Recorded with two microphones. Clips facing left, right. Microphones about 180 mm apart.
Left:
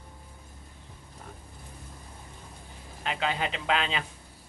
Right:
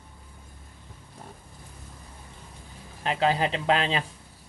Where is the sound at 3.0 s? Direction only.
35° right (ahead or behind).